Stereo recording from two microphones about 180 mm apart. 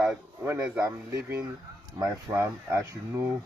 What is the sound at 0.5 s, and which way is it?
Speech, 20° right (ahead or behind).